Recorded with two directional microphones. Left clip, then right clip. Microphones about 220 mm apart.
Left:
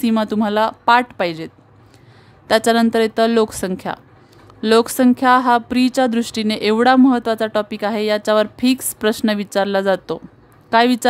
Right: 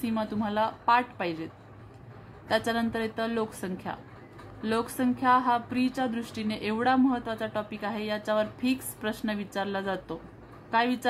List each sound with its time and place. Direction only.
0.0 s speech: 55° left (ahead or behind)